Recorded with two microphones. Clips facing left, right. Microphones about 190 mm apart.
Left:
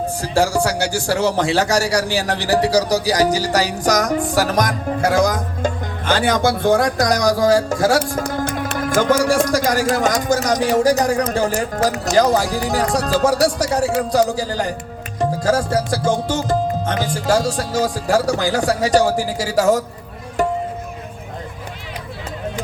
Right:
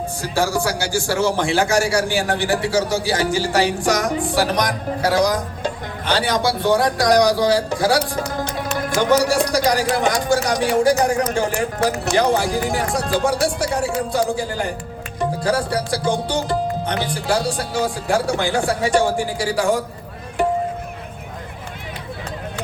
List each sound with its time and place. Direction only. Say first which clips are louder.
0.2 s speech: left 3 dB; 75° left (ahead or behind)
1.1 s music: left 2 dB; 40° left (ahead or behind)
4.2 s speech: left 2 dB; 45° left (ahead or behind)
15.2 s music: left 2 dB; 45° left (ahead or behind)